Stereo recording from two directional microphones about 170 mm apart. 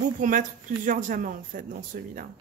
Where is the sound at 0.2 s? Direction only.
50° right (ahead or behind).